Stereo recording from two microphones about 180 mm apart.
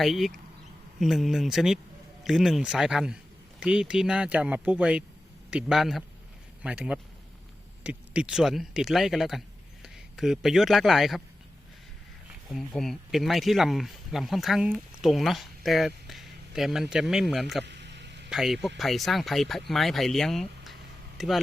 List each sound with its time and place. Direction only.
0.0 s speech: centre (ahead or behind)
12.5 s speech: centre (ahead or behind)
17.7 s a sound: 75° right (ahead or behind)
18.3 s speech: centre (ahead or behind)